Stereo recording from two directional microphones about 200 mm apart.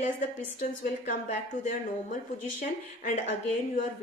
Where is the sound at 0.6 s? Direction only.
40° left (ahead or behind).